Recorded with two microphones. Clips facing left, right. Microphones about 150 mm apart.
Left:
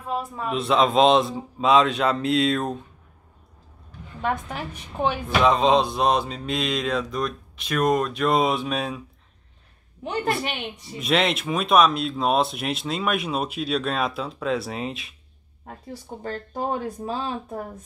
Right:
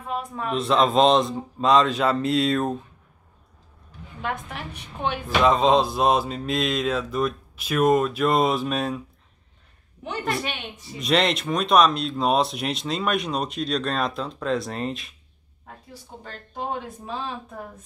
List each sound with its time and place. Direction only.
0.4 s speech: centre (ahead or behind)
5.0 s speech: centre (ahead or behind)
11.0 s speech: centre (ahead or behind)
16.3 s speech: 40° left (ahead or behind)